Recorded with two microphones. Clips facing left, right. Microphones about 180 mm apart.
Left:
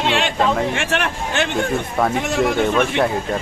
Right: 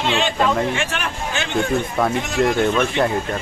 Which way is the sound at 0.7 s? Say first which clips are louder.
Left 3 dB; 65° left (ahead or behind).